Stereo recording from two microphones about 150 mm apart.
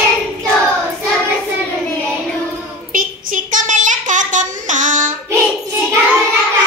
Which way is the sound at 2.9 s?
60° right (ahead or behind).